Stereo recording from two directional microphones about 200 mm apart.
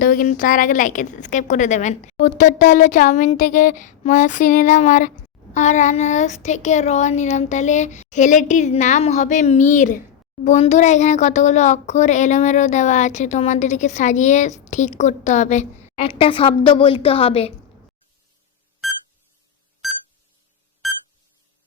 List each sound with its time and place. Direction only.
0.0 s a woman's voice: 45° left (ahead or behind)
18.8 s beep: centre (ahead or behind)